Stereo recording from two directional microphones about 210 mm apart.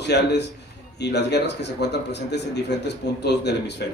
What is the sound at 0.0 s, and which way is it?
A man's voice, 55° left (ahead or behind).